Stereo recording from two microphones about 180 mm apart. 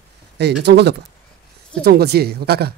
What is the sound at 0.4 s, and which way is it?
Speech, 70° right (ahead or behind).